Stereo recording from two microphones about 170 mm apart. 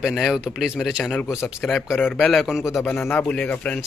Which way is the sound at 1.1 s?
10° left (ahead or behind).